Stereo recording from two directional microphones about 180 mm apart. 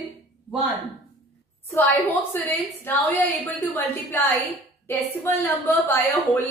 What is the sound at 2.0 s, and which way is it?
A woman's voice, 10° left (ahead or behind).